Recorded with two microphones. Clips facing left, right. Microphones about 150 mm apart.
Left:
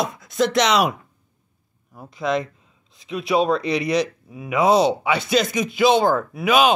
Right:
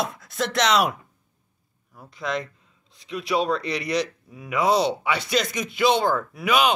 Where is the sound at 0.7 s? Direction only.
15° left (ahead or behind).